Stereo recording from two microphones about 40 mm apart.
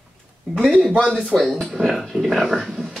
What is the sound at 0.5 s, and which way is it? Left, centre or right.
Speech, right.